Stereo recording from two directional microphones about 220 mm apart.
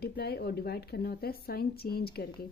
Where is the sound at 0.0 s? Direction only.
45° left (ahead or behind).